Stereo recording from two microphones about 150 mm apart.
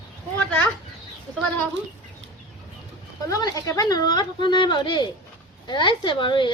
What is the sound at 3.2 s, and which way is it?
Speech, 25° left (ahead or behind).